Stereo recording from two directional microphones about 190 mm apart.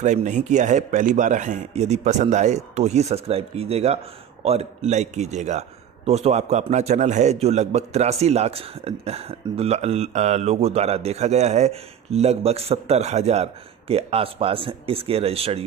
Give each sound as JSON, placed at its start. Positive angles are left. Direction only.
{"t": 0.0, "sound": "speech", "side_deg": -40}